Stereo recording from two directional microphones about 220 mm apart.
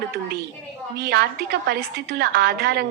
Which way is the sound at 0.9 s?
45° right (ahead or behind).